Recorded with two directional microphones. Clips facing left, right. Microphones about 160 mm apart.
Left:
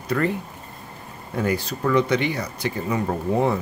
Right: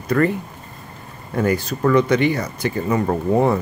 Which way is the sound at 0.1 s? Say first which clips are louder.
Right 5 dB; 55° right (ahead or behind).